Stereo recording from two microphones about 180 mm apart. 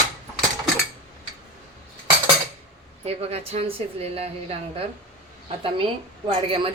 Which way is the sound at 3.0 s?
35° right (ahead or behind).